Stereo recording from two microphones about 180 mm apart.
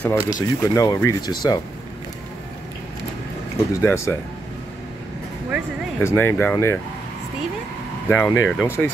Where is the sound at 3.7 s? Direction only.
15° left (ahead or behind).